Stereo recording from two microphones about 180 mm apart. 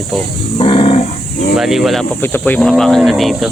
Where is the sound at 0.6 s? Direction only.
30° left (ahead or behind).